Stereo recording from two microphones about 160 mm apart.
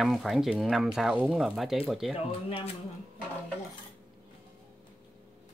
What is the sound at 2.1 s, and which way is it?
Speech, 35° left (ahead or behind).